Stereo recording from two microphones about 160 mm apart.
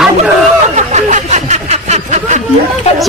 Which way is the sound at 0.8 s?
45° right (ahead or behind).